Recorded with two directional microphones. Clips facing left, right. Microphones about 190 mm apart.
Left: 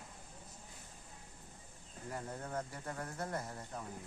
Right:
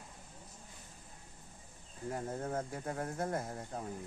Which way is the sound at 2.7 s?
45° right (ahead or behind).